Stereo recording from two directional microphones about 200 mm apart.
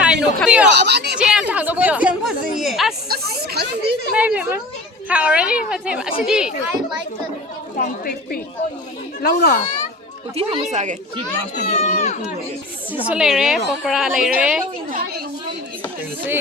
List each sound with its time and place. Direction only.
0.0 s a sound: 5° right (ahead or behind)
0.7 s speech: 55° right (ahead or behind)
1.2 s speech: 5° right (ahead or behind)
3.1 s speech: 50° right (ahead or behind)
4.1 s speech: 5° right (ahead or behind)
7.8 s a woman's voice: 45° left (ahead or behind)
10.3 s speech: 35° right (ahead or behind)
11.7 s speech: 35° left (ahead or behind)
13.1 s speech: 5° right (ahead or behind)
14.8 s speech: 45° right (ahead or behind)